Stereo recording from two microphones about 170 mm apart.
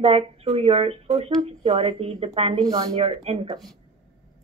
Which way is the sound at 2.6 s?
25° right (ahead or behind).